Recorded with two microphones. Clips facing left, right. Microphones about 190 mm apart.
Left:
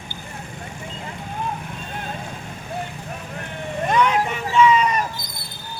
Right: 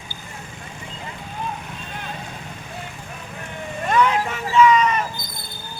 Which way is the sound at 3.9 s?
20° left (ahead or behind).